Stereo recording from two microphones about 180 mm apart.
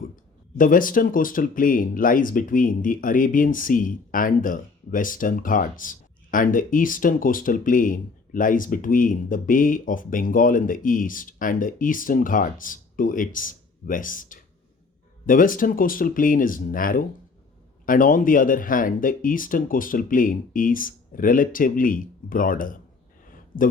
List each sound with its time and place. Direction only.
0.5 s speech: 50° left (ahead or behind)